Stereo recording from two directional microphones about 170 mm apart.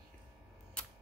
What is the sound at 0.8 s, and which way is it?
Camera, 5° left (ahead or behind).